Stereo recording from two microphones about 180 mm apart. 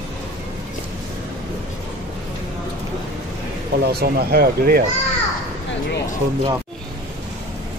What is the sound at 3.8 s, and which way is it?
Speech, 60° right (ahead or behind).